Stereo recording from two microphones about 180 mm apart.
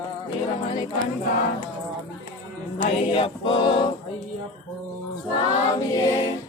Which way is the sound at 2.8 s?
30° left (ahead or behind).